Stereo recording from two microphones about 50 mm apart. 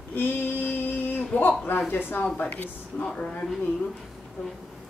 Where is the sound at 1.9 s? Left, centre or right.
Left.